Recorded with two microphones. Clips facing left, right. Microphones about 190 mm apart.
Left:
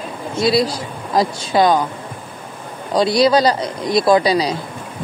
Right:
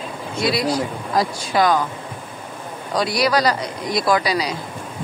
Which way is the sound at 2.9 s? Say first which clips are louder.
Left 6 dB; 25° left (ahead or behind).